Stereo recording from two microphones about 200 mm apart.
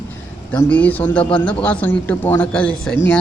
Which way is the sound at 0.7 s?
10° left (ahead or behind).